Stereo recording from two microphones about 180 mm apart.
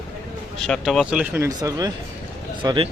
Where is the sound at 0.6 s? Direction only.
Centre (ahead or behind); by 1.9 s 20° right (ahead or behind).